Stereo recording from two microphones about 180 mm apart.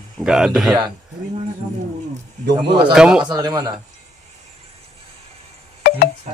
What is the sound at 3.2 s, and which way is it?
Speech, 25° right (ahead or behind).